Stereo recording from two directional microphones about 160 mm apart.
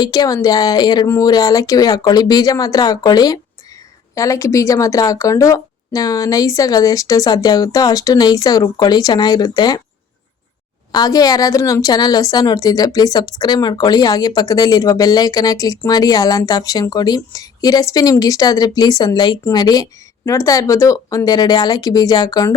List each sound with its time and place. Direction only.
0.0 s a woman's voice: 25° left (ahead or behind)
10.9 s a woman's voice: 25° left (ahead or behind)